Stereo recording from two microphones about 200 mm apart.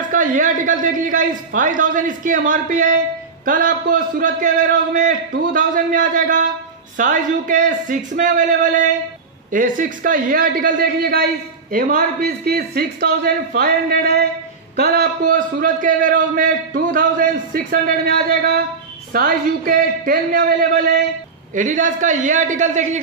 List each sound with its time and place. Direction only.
0.1 s a man's voice: 40° right (ahead or behind)